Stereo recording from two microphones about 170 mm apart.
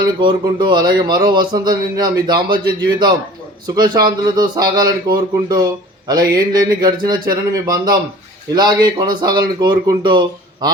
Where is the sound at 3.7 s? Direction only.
25° right (ahead or behind).